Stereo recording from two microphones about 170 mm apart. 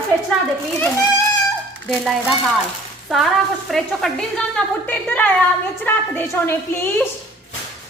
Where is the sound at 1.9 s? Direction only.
Centre (ahead or behind).